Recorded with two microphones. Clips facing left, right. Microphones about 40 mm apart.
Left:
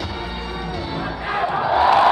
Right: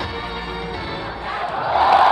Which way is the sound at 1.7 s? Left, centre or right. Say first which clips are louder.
Right 1 dB; centre.